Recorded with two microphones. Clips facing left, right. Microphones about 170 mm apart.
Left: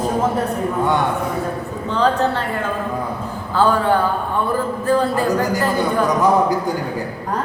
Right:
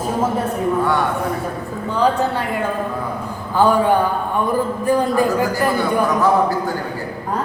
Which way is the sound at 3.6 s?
15° right (ahead or behind).